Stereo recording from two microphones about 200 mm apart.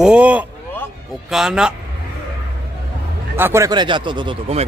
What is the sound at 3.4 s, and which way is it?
Speech, 15° right (ahead or behind).